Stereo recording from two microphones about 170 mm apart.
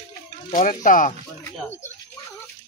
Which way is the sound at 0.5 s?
50° left (ahead or behind).